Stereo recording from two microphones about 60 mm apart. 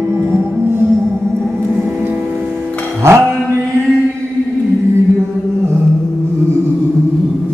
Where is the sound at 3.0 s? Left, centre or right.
Right.